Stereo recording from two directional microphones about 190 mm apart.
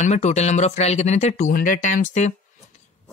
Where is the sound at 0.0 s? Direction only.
35° left (ahead or behind).